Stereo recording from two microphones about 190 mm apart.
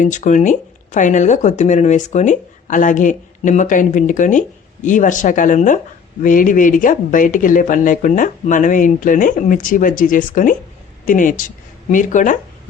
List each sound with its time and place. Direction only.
0.0 s speech: 40° left (ahead or behind)